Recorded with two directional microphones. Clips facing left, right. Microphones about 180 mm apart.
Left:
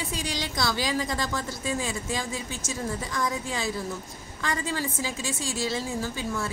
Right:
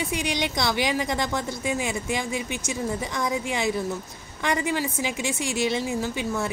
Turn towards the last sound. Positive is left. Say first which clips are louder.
# right 3 dB
turn(degrees=-20)  # may be behind; listen again after turning